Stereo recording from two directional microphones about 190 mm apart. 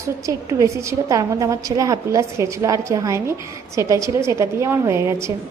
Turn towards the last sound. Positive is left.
turn(degrees=-15)  # may be behind; listen again after turning